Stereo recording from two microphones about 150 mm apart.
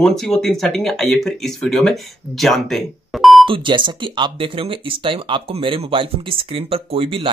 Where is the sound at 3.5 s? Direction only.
35° right (ahead or behind).